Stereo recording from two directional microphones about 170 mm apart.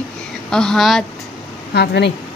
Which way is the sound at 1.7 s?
80° left.